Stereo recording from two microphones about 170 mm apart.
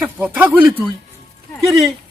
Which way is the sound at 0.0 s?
10° right (ahead or behind).